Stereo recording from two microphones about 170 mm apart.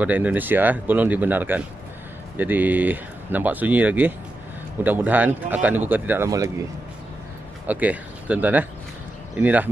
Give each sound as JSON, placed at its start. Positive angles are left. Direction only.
{"t": 0.0, "sound": "speech", "side_deg": -10}
{"t": 7.6, "sound": "speech", "side_deg": -10}